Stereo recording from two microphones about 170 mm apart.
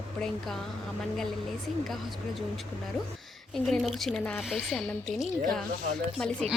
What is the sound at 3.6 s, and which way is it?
A woman's voice, centre (ahead or behind).